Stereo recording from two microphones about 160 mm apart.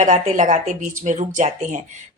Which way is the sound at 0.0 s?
50° right (ahead or behind).